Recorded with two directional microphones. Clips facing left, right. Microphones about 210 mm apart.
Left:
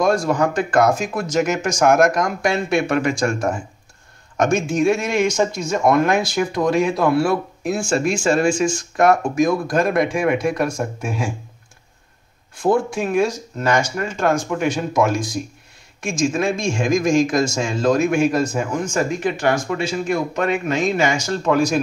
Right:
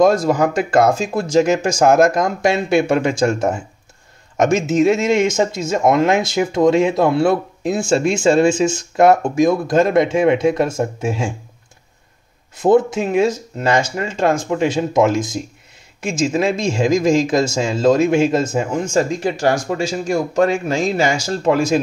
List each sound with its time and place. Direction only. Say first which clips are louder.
0.0 s speech: right 4 dB; 20° right (ahead or behind)
12.5 s speech: right 5 dB; 20° right (ahead or behind)